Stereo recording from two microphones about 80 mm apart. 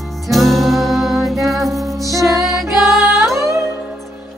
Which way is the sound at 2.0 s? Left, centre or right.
Right.